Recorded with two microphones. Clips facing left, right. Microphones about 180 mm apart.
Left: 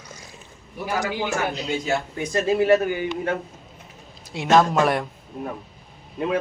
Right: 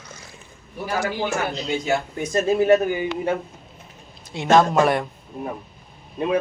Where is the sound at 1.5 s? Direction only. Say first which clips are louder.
Right 1 dB; 10° left (ahead or behind).